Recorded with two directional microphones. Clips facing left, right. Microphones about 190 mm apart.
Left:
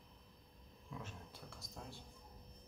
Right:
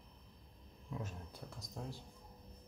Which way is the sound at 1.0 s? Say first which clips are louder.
Right 4 dB; 40° right (ahead or behind).